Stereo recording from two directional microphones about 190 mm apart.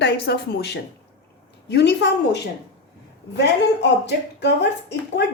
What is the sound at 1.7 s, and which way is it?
Speech, 65° left (ahead or behind).